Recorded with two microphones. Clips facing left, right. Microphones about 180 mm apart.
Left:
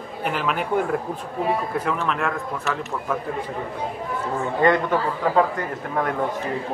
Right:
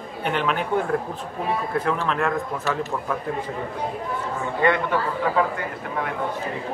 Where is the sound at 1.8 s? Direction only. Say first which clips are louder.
Right 1 dB; 5° left (ahead or behind).